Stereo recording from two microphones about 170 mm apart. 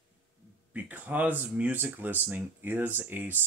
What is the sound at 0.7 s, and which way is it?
Speech, 10° right (ahead or behind).